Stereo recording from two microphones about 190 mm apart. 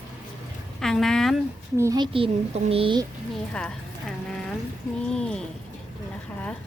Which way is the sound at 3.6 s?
5° left (ahead or behind).